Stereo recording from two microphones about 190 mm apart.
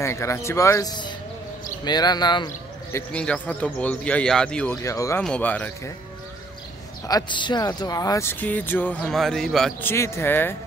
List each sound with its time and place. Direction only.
0.0 s speech: 15° left (ahead or behind)
3.1 s speech: 5° left (ahead or behind)
4.8 s speech: 15° left (ahead or behind)
7.1 s speech: 20° left (ahead or behind)